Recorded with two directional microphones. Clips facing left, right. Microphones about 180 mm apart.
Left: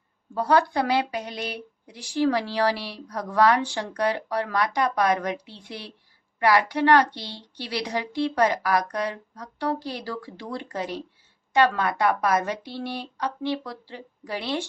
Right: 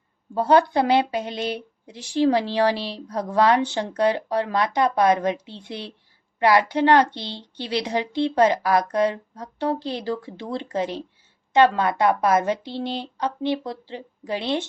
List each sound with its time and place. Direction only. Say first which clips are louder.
0.3 s speech: right 4 dB; 25° right (ahead or behind)